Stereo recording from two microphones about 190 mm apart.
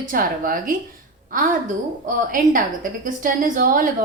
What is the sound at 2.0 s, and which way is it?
A woman's voice, 45° right (ahead or behind).